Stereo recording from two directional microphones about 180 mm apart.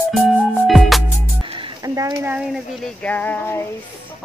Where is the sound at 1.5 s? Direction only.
20° right (ahead or behind).